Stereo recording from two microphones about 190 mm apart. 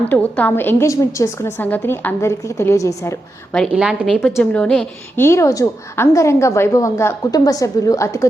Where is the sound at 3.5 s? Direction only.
Centre (ahead or behind); by 8.2 s 15° left (ahead or behind).